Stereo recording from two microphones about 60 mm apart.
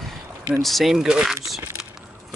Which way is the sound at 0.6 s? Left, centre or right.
Centre.